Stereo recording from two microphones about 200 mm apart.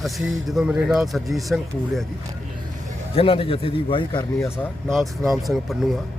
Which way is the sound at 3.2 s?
30° left (ahead or behind).